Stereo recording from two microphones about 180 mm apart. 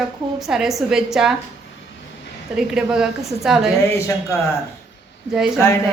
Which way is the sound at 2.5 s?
5° right (ahead or behind).